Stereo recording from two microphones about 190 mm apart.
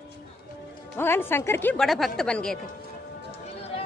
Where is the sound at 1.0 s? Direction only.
10° left (ahead or behind).